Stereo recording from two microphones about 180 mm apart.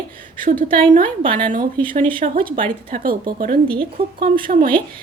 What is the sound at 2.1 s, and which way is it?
A woman's voice, 50° right (ahead or behind).